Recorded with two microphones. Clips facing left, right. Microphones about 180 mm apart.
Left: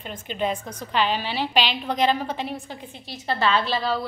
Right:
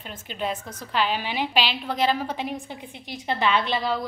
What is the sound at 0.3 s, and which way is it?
A woman's voice, 5° right (ahead or behind).